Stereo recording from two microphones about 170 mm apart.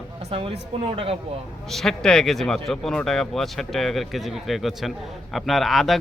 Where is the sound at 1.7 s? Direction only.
Centre (ahead or behind).